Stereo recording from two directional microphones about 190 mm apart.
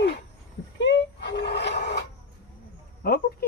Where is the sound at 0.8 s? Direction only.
65° left (ahead or behind).